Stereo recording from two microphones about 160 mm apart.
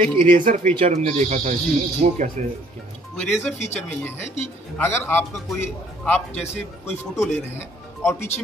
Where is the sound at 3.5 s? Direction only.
45° left (ahead or behind).